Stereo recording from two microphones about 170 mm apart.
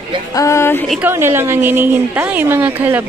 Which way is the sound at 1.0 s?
15° right (ahead or behind).